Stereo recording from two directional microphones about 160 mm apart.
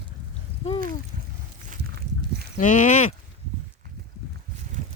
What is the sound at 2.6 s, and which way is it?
Speech, 55° left (ahead or behind).